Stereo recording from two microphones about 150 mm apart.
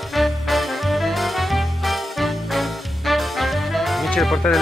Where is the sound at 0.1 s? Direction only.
Centre (ahead or behind).